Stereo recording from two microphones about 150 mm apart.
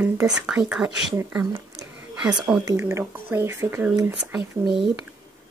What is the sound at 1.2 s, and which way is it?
Speech, 15° right (ahead or behind).